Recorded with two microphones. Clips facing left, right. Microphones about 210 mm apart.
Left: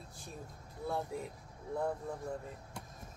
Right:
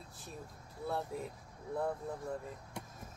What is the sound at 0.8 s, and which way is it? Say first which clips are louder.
Speech: even; centre (ahead or behind).